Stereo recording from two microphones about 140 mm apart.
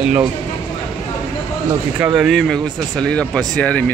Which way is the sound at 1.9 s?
10° right (ahead or behind).